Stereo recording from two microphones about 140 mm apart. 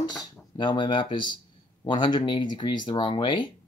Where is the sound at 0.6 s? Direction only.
35° left (ahead or behind).